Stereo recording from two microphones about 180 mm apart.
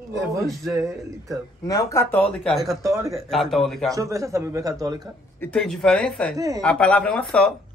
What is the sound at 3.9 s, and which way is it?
Speech, 15° right (ahead or behind).